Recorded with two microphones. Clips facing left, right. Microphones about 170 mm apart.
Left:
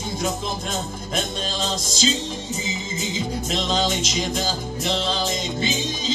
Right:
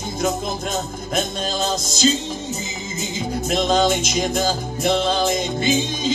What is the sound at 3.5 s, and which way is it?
Music, 50° right (ahead or behind).